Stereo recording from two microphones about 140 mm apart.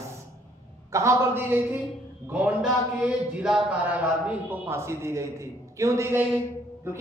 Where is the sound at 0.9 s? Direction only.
20° right (ahead or behind).